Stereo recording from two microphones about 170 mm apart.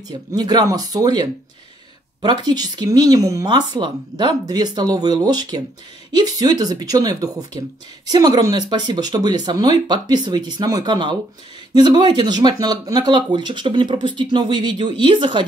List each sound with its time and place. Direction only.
0.1 s speech: 25° right (ahead or behind)
2.4 s speech: 25° right (ahead or behind)